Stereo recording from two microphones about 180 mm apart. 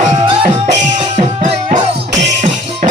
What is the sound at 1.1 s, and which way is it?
Music, 40° right (ahead or behind).